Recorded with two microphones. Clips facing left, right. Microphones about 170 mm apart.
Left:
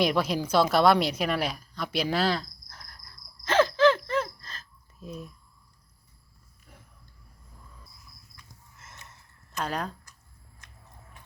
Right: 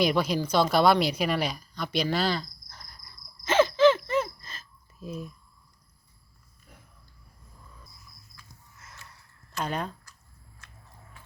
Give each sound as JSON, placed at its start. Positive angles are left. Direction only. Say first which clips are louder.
{"t": 0.0, "sound": "speech", "louder": "even", "side_deg": 0}
{"t": 0.3, "sound": "a sound", "louder": "left 2 dB", "side_deg": 5}
{"t": 8.8, "sound": "snort", "louder": "even", "side_deg": 25}
{"t": 9.6, "sound": "speech", "louder": "even", "side_deg": -5}